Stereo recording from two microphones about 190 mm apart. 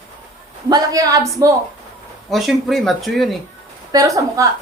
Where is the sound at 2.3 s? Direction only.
Centre (ahead or behind).